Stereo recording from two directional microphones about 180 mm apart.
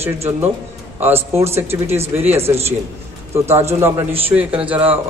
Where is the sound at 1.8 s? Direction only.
35° right (ahead or behind).